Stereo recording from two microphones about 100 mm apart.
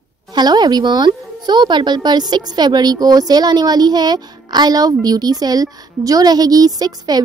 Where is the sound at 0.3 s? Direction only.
45° right (ahead or behind).